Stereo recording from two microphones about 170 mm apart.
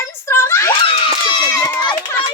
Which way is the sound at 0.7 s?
30° left (ahead or behind).